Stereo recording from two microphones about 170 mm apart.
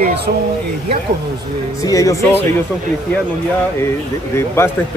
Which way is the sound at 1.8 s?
20° left (ahead or behind).